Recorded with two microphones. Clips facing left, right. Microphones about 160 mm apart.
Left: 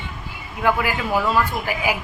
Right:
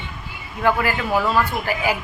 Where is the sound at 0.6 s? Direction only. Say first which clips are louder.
Right 1 dB; 10° left (ahead or behind).